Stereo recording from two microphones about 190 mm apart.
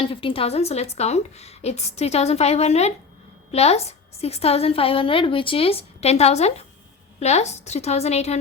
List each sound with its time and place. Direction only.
0.0 s a woman's voice: 30° left (ahead or behind)